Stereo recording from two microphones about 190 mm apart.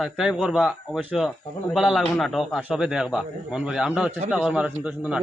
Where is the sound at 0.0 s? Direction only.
Centre (ahead or behind).